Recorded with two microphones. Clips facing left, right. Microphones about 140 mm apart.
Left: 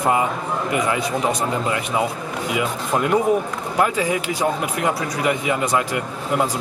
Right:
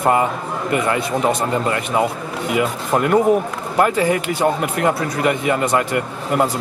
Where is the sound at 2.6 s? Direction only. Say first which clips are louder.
Right 4 dB; 55° right (ahead or behind).